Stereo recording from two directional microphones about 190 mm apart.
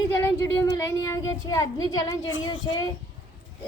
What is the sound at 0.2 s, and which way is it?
A child's voice, 15° left (ahead or behind).